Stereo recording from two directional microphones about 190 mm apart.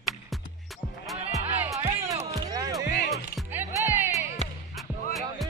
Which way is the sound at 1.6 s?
15° right (ahead or behind).